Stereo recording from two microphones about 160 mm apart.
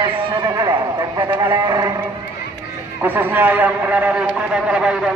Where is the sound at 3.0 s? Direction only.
10° right (ahead or behind).